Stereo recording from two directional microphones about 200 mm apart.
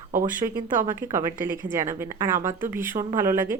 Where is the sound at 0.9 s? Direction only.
15° right (ahead or behind).